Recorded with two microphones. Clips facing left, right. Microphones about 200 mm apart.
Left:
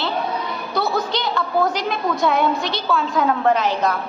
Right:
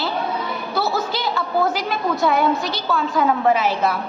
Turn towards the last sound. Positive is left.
turn(degrees=-10)  # may be behind; listen again after turning